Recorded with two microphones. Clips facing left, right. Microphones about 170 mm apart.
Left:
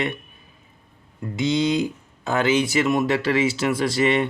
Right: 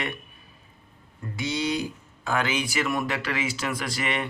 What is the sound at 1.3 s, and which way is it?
Speech, 20° left (ahead or behind).